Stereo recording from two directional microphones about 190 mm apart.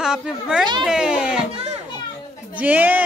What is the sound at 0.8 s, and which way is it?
Speech, 5° right (ahead or behind).